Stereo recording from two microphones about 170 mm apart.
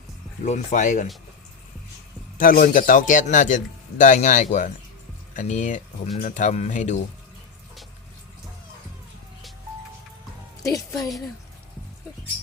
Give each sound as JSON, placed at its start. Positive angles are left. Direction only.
{"t": 0.4, "sound": "a man's voice", "side_deg": 45}
{"t": 2.4, "sound": "a man's voice", "side_deg": 55}
{"t": 10.6, "sound": "a woman's voice", "side_deg": 20}